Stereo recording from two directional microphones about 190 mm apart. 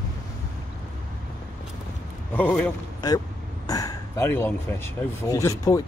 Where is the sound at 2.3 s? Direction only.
10° left (ahead or behind).